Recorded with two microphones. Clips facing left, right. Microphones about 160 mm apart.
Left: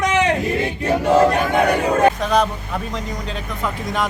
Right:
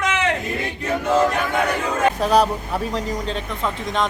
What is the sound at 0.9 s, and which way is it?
Speech, 35° left (ahead or behind).